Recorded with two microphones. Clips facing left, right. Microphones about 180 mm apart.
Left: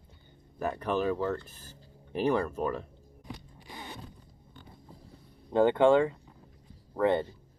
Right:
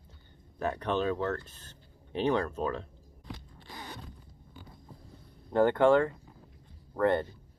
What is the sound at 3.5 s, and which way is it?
Zipper, 10° left (ahead or behind).